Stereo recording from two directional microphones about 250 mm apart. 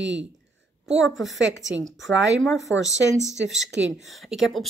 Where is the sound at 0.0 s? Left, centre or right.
Right.